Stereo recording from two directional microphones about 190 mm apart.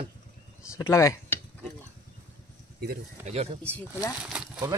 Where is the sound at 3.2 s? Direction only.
35° right (ahead or behind).